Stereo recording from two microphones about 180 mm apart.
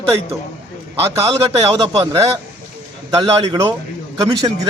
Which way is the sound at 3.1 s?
25° right (ahead or behind).